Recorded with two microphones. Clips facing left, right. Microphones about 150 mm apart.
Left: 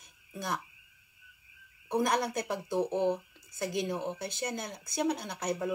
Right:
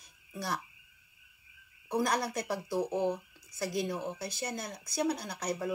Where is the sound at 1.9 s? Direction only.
25° left (ahead or behind).